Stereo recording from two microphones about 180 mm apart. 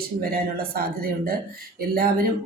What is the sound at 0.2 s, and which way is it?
Speech, 55° right (ahead or behind).